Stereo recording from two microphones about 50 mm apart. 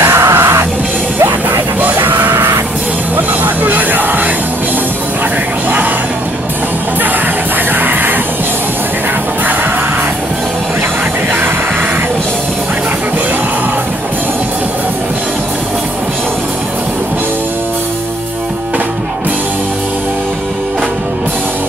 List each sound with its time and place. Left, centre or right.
0.0 s music: right
1.8 s music: right
3.2 s music: right
7.8 s music: right